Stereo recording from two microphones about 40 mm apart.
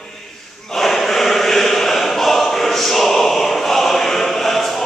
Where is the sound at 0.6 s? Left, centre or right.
Centre.